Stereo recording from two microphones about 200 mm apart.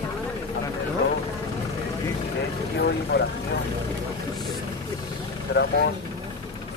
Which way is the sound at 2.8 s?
55° left (ahead or behind).